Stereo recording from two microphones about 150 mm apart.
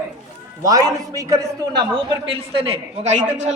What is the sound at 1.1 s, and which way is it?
Speech, 20° right (ahead or behind).